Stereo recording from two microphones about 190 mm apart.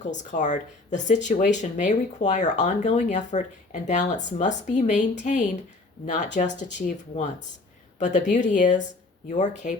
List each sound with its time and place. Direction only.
0.0 s speech: 40° left (ahead or behind)